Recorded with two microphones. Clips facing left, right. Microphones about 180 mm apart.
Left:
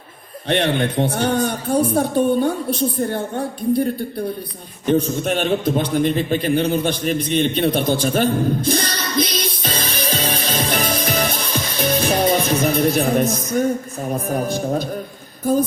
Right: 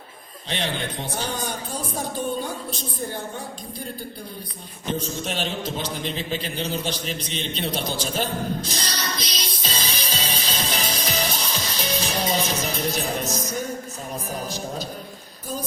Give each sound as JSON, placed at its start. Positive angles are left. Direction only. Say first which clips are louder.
{"t": 0.4, "sound": "a woman's voice", "louder": "left 10 dB", "side_deg": 60}
{"t": 4.9, "sound": "a sound", "louder": "left 10 dB", "side_deg": 60}
{"t": 14.1, "sound": "a woman's voice", "louder": "left 10 dB", "side_deg": 55}